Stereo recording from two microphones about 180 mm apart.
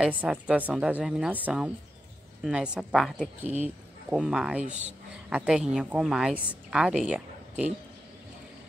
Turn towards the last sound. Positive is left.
turn(degrees=-5)  # may be behind; listen again after turning